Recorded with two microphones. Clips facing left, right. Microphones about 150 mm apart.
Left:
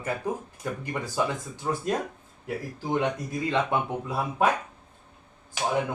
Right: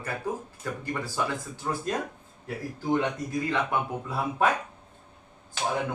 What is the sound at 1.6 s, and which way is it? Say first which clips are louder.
Speech: left 2 dB; 5° left (ahead or behind).